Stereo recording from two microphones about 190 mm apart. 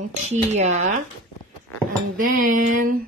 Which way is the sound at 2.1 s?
45° right (ahead or behind).